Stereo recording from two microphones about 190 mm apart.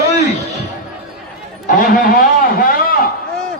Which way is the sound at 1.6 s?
45° left (ahead or behind).